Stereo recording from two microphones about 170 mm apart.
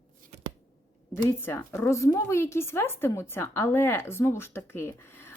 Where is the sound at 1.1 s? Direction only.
15° left (ahead or behind).